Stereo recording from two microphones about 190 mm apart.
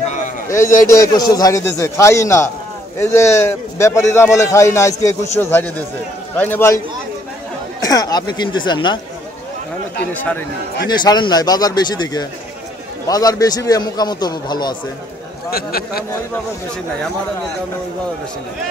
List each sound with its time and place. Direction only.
0.5 s a man's voice: 15° left (ahead or behind)
7.8 s a man's voice: 20° left (ahead or behind)
10.9 s a man's voice: 20° left (ahead or behind)
15.5 s speech: 55° left (ahead or behind)